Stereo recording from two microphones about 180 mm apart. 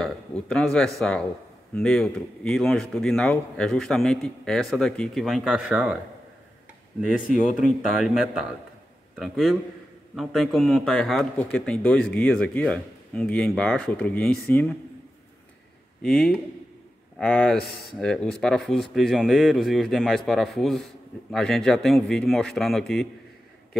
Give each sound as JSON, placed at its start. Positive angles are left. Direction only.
{"t": 0.0, "sound": "a man's voice", "side_deg": 5}
{"t": 7.6, "sound": "a man's voice", "side_deg": -5}
{"t": 16.0, "sound": "speech", "side_deg": 5}
{"t": 17.6, "sound": "speech", "side_deg": 55}
{"t": 17.9, "sound": "speech", "side_deg": 0}